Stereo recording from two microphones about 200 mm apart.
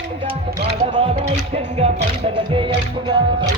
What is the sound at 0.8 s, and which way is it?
Music, 30° right (ahead or behind).